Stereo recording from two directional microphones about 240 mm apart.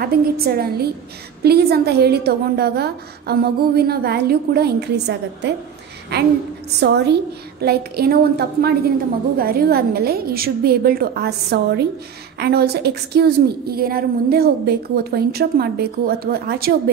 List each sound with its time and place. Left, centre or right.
0.0 s a woman's voice: right